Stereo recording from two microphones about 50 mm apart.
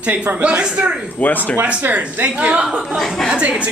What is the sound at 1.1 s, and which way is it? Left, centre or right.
Snicker, left.